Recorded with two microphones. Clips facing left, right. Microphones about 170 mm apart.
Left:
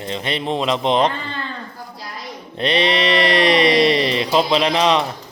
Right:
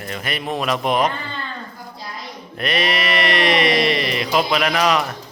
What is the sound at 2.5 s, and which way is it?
A man's voice, 30° left (ahead or behind).